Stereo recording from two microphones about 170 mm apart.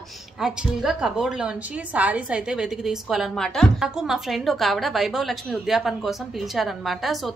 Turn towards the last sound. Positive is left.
turn(degrees=0)  # may be behind; listen again after turning